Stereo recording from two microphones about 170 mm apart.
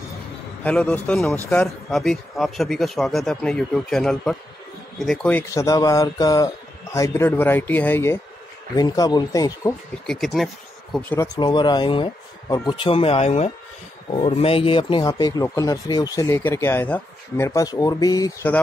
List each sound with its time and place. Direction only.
0.7 s a man's voice: 5° left (ahead or behind)
5.5 s a man's voice: 20° left (ahead or behind)
10.0 s speech: centre (ahead or behind)
11.3 s speech: 25° left (ahead or behind)